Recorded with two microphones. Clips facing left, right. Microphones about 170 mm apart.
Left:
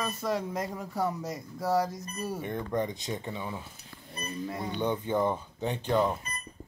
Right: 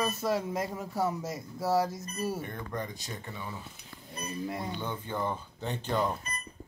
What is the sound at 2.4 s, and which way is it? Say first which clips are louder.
Speech: left 6 dB; 20° left (ahead or behind).